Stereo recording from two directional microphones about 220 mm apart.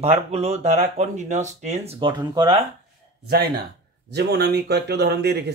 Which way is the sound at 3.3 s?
45° right (ahead or behind).